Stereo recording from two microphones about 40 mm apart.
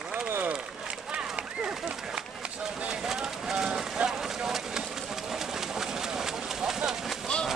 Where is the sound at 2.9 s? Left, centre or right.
Centre.